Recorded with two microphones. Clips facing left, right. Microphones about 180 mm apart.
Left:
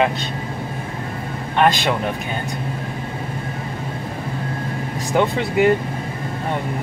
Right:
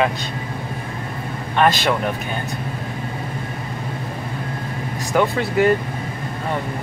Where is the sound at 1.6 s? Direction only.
15° left (ahead or behind).